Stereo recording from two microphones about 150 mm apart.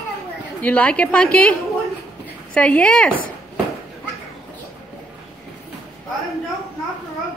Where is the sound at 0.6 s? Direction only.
10° left (ahead or behind).